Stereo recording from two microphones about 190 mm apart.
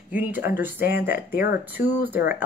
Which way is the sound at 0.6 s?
10° right (ahead or behind).